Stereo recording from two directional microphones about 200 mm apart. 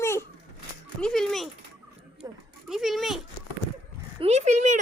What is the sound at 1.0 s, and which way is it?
Speech, centre (ahead or behind).